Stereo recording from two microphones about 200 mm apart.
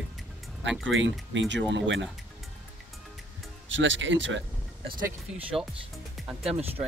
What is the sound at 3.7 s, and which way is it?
Speech, 65° right (ahead or behind).